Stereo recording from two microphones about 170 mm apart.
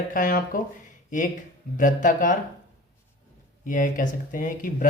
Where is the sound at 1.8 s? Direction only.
50° left (ahead or behind).